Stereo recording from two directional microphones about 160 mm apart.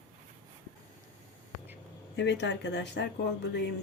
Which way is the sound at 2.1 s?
90° left.